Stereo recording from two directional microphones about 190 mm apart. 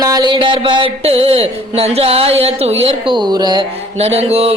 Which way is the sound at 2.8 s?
25° right (ahead or behind).